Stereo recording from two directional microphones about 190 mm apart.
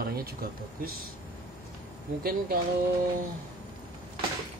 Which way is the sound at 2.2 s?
50° right (ahead or behind).